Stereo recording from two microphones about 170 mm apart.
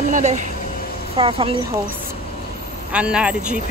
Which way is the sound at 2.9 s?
5° right (ahead or behind).